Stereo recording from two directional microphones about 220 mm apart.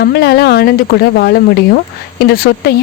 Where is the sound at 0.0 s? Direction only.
50° left (ahead or behind).